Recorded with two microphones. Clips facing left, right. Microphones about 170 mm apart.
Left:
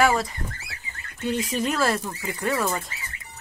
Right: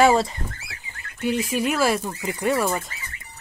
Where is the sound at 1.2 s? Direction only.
10° right (ahead or behind).